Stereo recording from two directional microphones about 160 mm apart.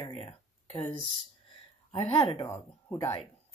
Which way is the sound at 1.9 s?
35° left (ahead or behind).